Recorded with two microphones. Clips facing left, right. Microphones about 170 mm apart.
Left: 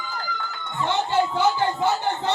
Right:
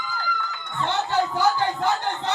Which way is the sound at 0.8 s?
20° left (ahead or behind).